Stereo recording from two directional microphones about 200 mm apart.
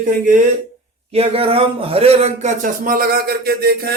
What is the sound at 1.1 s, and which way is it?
Speech, 30° right (ahead or behind).